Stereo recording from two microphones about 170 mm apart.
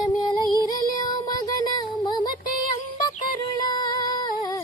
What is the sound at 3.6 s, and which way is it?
Music, 25° left (ahead or behind).